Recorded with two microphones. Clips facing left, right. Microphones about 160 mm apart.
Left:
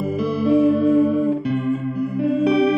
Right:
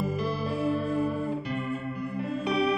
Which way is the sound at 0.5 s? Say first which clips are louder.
Left 16 dB; 90° left.